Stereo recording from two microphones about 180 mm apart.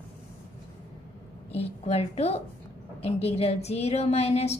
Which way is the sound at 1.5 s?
35° left (ahead or behind).